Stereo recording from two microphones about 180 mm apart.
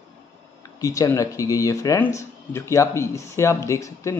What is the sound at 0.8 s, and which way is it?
Speech, 20° left (ahead or behind).